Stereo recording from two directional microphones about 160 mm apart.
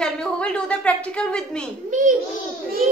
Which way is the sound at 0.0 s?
5° left (ahead or behind).